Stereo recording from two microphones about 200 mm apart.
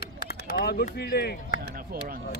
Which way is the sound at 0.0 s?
50° left (ahead or behind).